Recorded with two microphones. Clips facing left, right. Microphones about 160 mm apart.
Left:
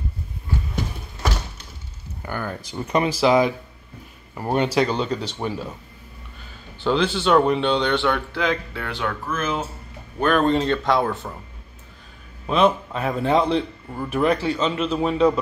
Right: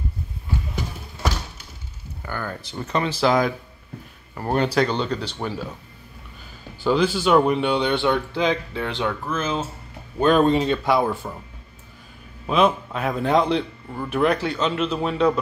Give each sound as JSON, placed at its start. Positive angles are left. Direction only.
{"t": 2.2, "sound": "a man's voice", "side_deg": 15}
{"t": 6.8, "sound": "speech", "side_deg": -5}
{"t": 10.2, "sound": "speech", "side_deg": -15}
{"t": 12.4, "sound": "a man's voice", "side_deg": 0}